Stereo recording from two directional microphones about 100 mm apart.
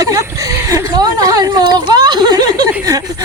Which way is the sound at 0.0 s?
30° right (ahead or behind).